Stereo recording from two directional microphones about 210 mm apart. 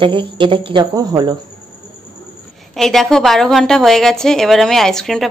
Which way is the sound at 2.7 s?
Centre (ahead or behind).